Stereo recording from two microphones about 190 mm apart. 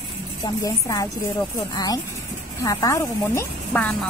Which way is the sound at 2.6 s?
15° left (ahead or behind).